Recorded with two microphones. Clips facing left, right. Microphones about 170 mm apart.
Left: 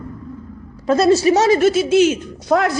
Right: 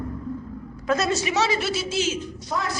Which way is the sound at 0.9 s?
35° left (ahead or behind).